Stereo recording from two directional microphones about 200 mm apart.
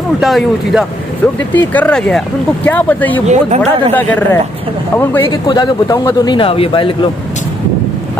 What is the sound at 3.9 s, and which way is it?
Speech, 10° left (ahead or behind).